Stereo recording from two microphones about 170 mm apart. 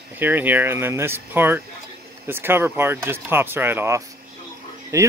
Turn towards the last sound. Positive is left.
turn(degrees=-15)  # may be behind; listen again after turning